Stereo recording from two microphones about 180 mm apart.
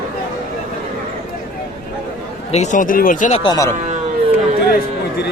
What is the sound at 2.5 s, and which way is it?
Speech, 40° left (ahead or behind).